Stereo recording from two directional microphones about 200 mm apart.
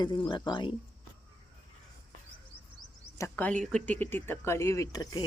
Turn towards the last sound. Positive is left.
turn(degrees=20)  # may be behind; listen again after turning